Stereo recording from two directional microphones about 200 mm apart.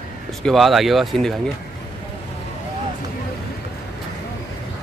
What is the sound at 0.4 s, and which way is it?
Speech, centre (ahead or behind).